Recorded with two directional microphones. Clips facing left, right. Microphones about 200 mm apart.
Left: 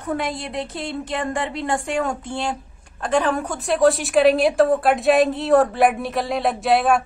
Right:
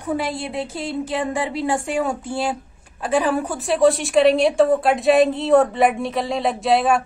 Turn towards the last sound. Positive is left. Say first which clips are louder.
# even
turn(degrees=0)  # may be behind; listen again after turning